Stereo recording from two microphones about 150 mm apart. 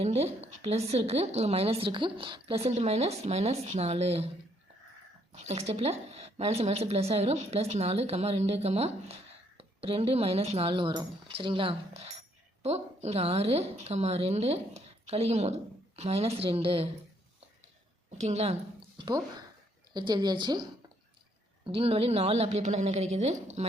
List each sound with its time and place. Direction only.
0.0 s a woman's voice: 45° right (ahead or behind)
5.3 s a woman's voice: 45° right (ahead or behind)
18.2 s a woman's voice: 45° right (ahead or behind)
18.9 s a sound: 30° right (ahead or behind)
19.9 s a woman's voice: 30° right (ahead or behind); by 23.6 s 50° right (ahead or behind)